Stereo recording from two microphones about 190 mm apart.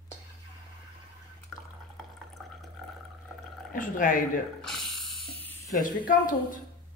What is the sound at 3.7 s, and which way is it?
Speech, 45° left (ahead or behind).